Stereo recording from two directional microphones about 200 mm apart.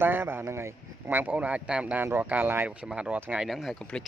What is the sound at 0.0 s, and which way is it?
Speech, 10° right (ahead or behind).